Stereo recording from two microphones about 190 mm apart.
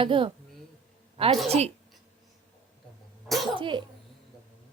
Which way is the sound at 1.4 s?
35° right (ahead or behind).